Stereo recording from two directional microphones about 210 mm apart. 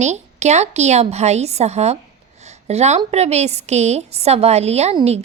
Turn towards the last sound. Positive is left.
turn(degrees=-30)  # may be behind; listen again after turning